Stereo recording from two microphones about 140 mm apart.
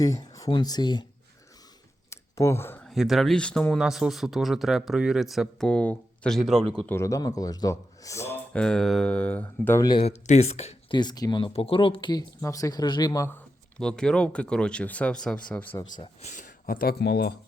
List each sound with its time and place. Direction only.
0.0 s speech: 25° left (ahead or behind)
2.0 s a sound: 20° left (ahead or behind)
2.8 s speech: centre (ahead or behind)
7.0 s speech: 25° left (ahead or behind)
8.5 s speech: 5° left (ahead or behind)
10.0 s speech: 50° left (ahead or behind)
10.9 s speech: 30° left (ahead or behind)
12.4 s speech: 20° left (ahead or behind)
13.7 s speech: 5° left (ahead or behind)
16.2 s speech: 65° left (ahead or behind); by 16.9 s 90° left